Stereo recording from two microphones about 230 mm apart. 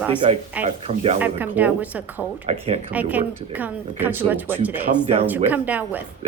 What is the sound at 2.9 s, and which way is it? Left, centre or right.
Speech, centre.